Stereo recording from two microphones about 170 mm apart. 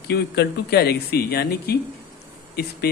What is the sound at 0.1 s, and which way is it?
A man's voice, 70° left (ahead or behind).